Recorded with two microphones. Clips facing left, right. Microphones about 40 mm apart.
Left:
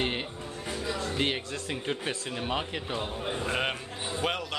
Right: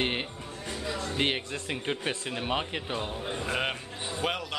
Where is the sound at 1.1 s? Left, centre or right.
Right.